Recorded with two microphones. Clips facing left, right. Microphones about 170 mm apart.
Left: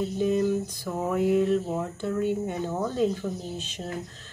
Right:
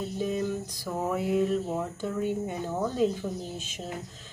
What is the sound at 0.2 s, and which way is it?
Speech, centre (ahead or behind).